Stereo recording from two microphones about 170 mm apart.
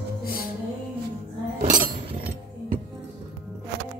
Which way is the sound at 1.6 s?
50° right (ahead or behind).